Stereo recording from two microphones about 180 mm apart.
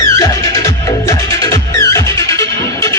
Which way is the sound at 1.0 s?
20° left (ahead or behind).